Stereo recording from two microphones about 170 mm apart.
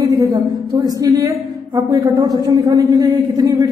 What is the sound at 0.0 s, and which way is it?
A woman's voice, 20° right (ahead or behind).